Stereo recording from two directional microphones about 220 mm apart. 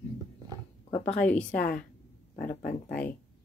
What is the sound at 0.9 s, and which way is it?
Speech, 25° left (ahead or behind).